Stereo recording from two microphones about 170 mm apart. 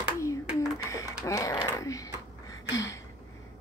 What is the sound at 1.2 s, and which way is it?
Typing, 20° left (ahead or behind).